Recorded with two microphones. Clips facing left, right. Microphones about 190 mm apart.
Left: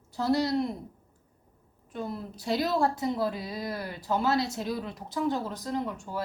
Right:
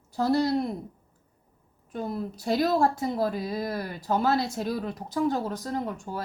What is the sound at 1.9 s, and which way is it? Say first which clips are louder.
A woman's voice: right 4 dB; 45° right (ahead or behind).